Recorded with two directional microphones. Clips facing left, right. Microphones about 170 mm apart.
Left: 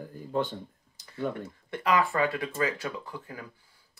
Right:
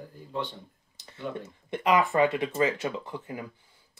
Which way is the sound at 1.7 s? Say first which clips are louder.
Right 2 dB; 20° right (ahead or behind).